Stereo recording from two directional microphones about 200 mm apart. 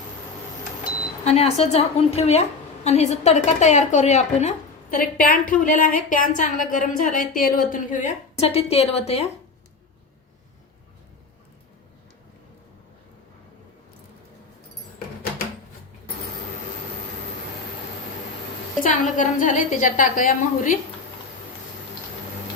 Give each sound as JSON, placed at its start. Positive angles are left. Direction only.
{"t": 1.2, "sound": "a woman's voice", "side_deg": 30}
{"t": 18.8, "sound": "a woman's voice", "side_deg": 40}